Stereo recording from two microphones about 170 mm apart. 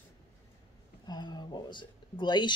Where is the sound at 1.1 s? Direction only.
25° left (ahead or behind).